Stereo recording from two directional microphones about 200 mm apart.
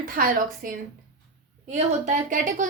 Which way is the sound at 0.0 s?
45° right (ahead or behind).